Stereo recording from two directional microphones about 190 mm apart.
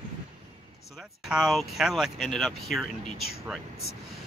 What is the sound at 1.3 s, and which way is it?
Speech, 5° right (ahead or behind).